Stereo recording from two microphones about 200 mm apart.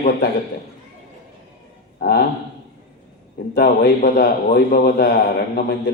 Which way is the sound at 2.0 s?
50° left (ahead or behind).